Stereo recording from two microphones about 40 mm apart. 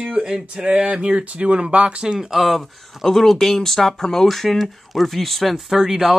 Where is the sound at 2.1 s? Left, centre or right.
Centre.